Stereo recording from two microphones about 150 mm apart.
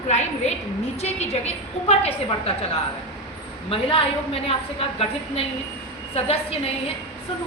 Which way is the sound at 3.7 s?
40° left (ahead or behind).